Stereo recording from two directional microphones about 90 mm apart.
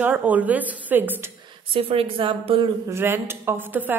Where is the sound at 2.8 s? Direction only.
25° right (ahead or behind).